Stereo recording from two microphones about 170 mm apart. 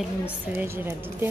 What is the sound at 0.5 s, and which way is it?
Speech, 15° right (ahead or behind).